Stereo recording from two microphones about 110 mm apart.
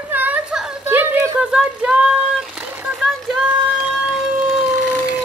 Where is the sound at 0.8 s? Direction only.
15° right (ahead or behind).